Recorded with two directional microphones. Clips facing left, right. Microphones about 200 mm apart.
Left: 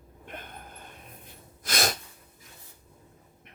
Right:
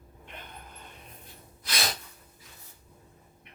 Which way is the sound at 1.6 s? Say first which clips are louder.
Left 5 dB; 45° left (ahead or behind).